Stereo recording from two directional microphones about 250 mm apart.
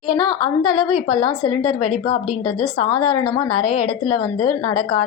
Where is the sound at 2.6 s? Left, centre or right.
Centre.